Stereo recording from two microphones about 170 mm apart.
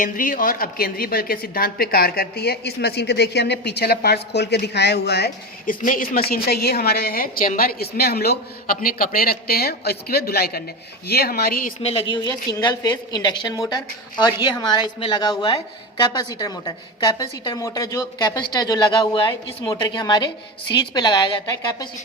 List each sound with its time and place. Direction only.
0.0 s a woman's voice: 55° left (ahead or behind)
11.8 s a woman's voice: 35° left (ahead or behind)